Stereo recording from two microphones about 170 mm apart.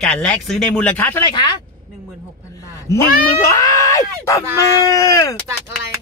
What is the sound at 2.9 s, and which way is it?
Speech, 20° left (ahead or behind).